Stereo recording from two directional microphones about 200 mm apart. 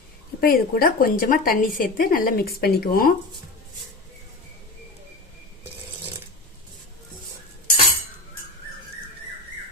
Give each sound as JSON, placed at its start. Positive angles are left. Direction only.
{"t": 0.4, "sound": "a woman's voice", "side_deg": 45}